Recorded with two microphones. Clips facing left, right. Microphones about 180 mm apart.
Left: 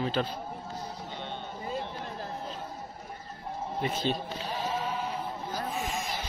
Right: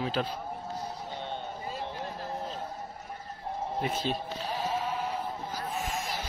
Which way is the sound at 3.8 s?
5° right (ahead or behind).